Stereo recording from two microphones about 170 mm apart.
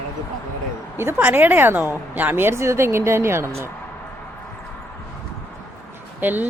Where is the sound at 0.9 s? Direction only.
15° right (ahead or behind).